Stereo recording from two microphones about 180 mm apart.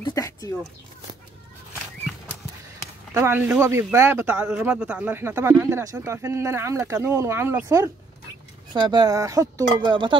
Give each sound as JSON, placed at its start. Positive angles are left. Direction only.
{"t": 0.0, "sound": "speech", "side_deg": 20}
{"t": 3.2, "sound": "speech", "side_deg": -10}